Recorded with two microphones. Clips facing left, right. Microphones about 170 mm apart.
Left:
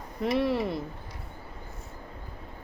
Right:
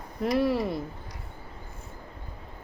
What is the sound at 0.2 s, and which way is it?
Speech, centre (ahead or behind).